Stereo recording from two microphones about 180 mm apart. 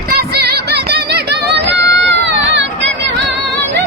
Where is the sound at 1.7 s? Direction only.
75° right (ahead or behind).